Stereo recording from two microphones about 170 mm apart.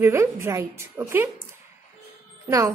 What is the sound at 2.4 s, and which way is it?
Speech, 20° right (ahead or behind).